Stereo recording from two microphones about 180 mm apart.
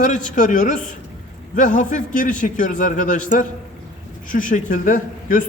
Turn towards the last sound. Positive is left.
turn(degrees=45)  # may be behind; listen again after turning